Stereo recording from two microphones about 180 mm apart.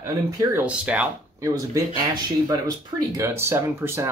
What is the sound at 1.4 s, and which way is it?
Speech, 20° right (ahead or behind).